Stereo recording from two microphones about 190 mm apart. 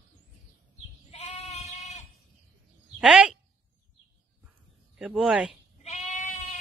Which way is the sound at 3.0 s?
5° right (ahead or behind).